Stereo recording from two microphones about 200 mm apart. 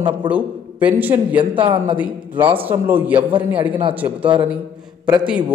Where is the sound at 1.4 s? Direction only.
25° right (ahead or behind).